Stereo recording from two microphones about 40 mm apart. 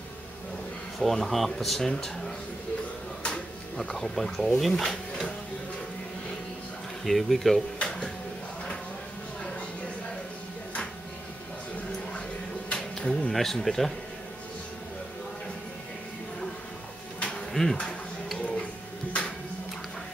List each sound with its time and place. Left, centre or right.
0.9 s speech: centre
1.8 s speech: centre
3.2 s a sound: left
3.7 s speech: centre
7.1 s speech: centre
7.8 s a sound: centre
12.7 s a sound: centre
13.3 s speech: centre
17.5 s speech: centre